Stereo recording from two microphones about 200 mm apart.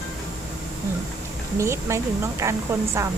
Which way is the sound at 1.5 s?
15° right (ahead or behind).